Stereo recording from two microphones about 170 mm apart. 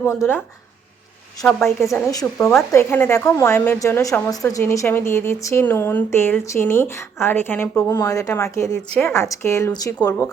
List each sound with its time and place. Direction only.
0.0 s a woman's voice: 15° left (ahead or behind)
1.5 s a woman's voice: 5° left (ahead or behind)
2.0 s a woman's voice: 20° left (ahead or behind)